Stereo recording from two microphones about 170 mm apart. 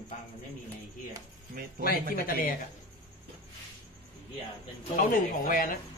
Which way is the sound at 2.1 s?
60° left (ahead or behind).